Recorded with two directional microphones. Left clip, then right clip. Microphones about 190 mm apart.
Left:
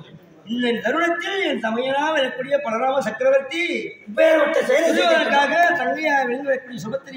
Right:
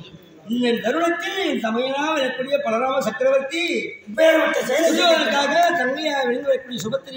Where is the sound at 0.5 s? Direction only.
Centre (ahead or behind).